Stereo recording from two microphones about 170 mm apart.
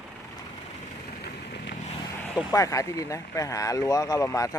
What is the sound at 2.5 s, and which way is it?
Speech, 20° left (ahead or behind).